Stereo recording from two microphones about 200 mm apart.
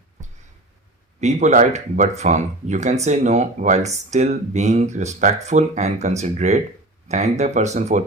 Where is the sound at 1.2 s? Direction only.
35° right (ahead or behind).